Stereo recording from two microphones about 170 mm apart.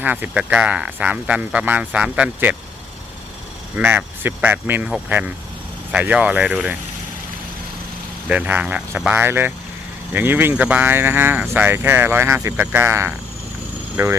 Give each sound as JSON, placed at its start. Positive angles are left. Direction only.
{"t": 0.0, "sound": "speech", "side_deg": -10}
{"t": 3.8, "sound": "speech", "side_deg": -10}
{"t": 8.3, "sound": "speech", "side_deg": -10}